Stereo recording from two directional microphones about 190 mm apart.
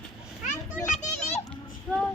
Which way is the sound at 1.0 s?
35° left (ahead or behind).